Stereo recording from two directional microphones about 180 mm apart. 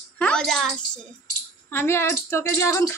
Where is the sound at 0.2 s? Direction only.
5° left (ahead or behind).